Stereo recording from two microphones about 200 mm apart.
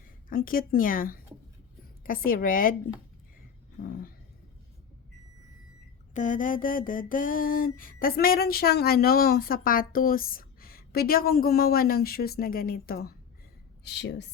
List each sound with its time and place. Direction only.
0.3 s mantra: 45° left (ahead or behind)
3.8 s mantra: 45° left (ahead or behind)
6.1 s mantra: 40° left (ahead or behind)
13.8 s a woman's voice: 60° left (ahead or behind)